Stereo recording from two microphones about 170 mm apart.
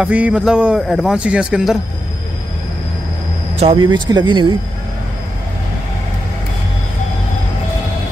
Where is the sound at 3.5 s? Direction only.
30° right (ahead or behind).